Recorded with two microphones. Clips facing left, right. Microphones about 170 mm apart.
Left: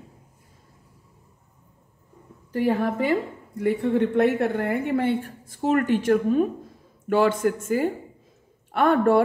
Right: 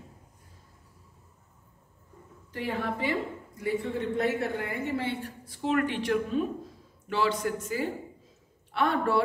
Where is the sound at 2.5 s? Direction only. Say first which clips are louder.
Left 9 dB; 45° left (ahead or behind).